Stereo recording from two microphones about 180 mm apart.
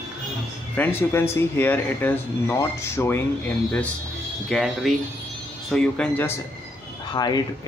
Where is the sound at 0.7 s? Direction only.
10° left (ahead or behind).